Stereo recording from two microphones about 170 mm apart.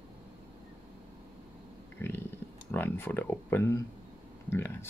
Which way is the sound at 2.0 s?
15° left (ahead or behind).